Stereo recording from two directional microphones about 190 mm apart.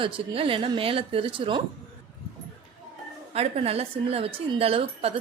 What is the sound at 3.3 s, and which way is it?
A woman's voice, 30° right (ahead or behind).